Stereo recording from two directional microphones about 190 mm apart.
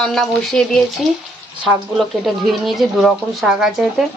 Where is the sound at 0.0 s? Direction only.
5° left (ahead or behind).